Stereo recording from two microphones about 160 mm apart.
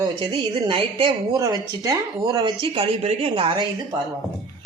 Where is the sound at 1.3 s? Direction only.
20° right (ahead or behind).